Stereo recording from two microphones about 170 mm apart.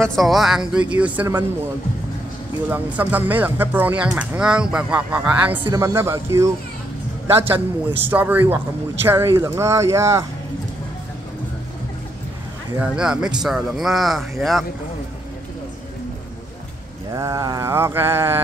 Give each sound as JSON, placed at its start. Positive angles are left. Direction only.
{"t": 0.0, "sound": "speech", "side_deg": 0}
{"t": 2.7, "sound": "speech", "side_deg": -10}
{"t": 12.8, "sound": "speech", "side_deg": -5}
{"t": 17.1, "sound": "speech", "side_deg": -20}